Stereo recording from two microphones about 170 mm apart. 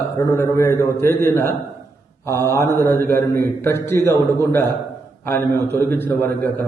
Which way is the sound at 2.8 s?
10° left (ahead or behind).